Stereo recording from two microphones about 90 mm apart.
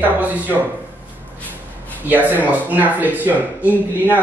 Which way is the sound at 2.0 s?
20° right (ahead or behind).